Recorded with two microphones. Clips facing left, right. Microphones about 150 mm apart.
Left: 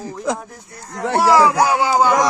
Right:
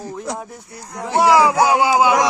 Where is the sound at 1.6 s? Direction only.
15° right (ahead or behind).